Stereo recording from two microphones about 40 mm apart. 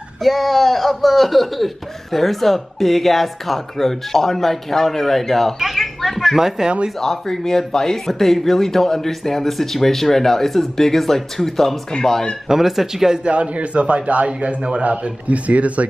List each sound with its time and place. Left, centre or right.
0.2 s speech: centre
5.8 s a sound: centre
6.3 s speech: centre
7.0 s speech: centre
12.4 s speech: centre
13.2 s a man's voice: right